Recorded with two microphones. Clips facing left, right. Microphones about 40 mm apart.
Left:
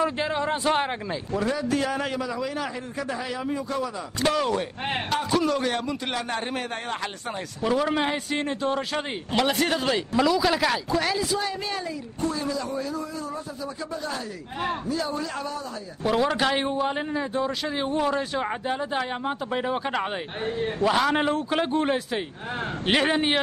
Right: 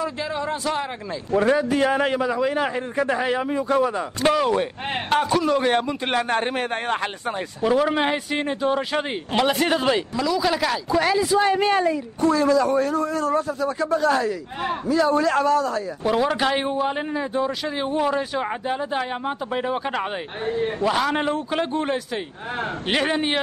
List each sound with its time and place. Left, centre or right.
0.0 s a man's voice: left
1.3 s a man's voice: right
4.2 s speech: centre
5.1 s a man's voice: right
7.2 s speech: centre
10.3 s a man's voice: centre
11.0 s speech: centre
11.4 s a man's voice: right
12.2 s a man's voice: right
16.0 s a man's voice: centre